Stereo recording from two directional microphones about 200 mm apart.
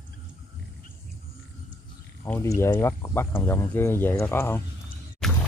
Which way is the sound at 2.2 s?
10° left (ahead or behind).